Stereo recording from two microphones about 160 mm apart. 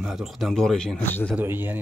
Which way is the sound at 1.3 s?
10° right (ahead or behind).